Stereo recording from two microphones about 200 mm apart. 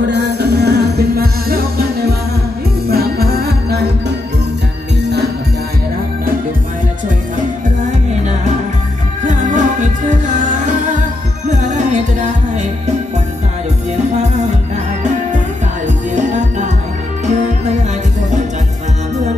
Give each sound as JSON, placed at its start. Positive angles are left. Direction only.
{"t": 0.0, "sound": "music", "side_deg": -60}
{"t": 7.3, "sound": "music", "side_deg": -40}
{"t": 16.2, "sound": "music", "side_deg": -35}